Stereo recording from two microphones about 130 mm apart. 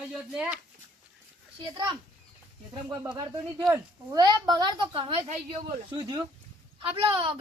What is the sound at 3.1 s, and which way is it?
Speech, 25° right (ahead or behind).